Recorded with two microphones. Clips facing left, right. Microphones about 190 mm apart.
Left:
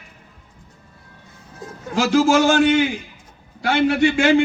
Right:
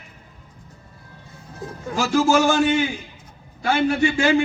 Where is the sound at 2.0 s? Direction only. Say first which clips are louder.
Left 2 dB; 85° left.